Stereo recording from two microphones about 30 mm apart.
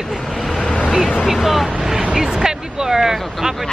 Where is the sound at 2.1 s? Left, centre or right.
Right.